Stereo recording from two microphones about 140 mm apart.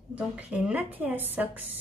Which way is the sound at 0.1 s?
10° right (ahead or behind).